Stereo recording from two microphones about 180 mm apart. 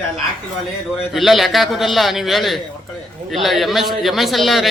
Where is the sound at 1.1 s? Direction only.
Centre (ahead or behind).